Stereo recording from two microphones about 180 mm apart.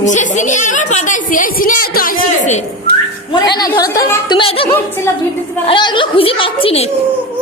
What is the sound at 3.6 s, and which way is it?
A child's voice, 20° left (ahead or behind).